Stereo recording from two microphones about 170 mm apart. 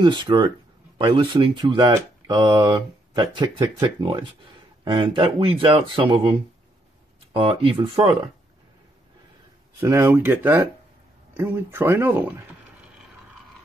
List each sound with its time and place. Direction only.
0.0 s speech: 25° right (ahead or behind)
7.3 s speech: 30° right (ahead or behind)
9.8 s speech: 15° right (ahead or behind)